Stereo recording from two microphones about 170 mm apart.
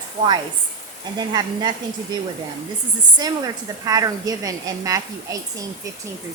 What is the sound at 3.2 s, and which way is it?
A woman's voice, 20° right (ahead or behind).